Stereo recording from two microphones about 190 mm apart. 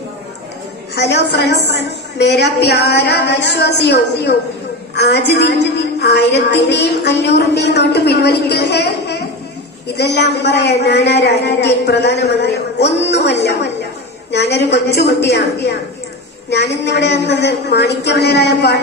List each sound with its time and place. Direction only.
0.9 s a woman's voice: 65° left (ahead or behind)